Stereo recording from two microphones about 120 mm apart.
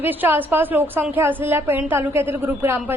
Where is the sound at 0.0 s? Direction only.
15° right (ahead or behind).